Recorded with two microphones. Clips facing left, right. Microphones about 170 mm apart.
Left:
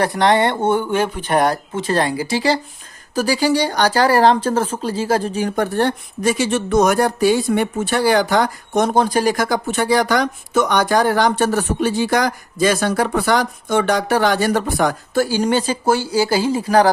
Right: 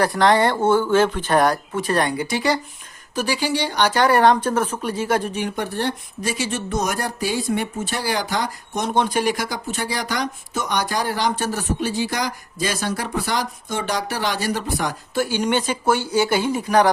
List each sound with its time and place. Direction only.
0.0 s speech: 25° left (ahead or behind)
1.4 s speech: 25° left (ahead or behind); by 8.9 s 60° left (ahead or behind)
8.9 s speech: 40° left (ahead or behind)